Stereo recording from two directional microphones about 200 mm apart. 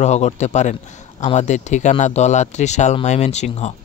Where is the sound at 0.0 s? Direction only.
35° left (ahead or behind).